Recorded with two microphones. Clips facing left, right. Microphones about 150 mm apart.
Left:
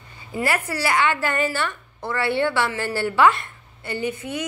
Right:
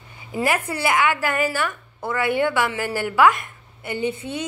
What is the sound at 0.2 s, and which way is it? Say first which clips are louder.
A woman's voice: right 2 dB; 20° right (ahead or behind).